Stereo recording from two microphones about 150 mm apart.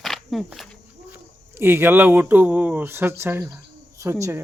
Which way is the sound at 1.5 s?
15° right (ahead or behind).